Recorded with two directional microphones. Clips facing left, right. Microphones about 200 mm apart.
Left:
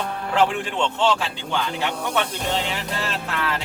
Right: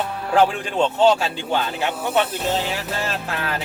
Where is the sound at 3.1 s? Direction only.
45° right (ahead or behind).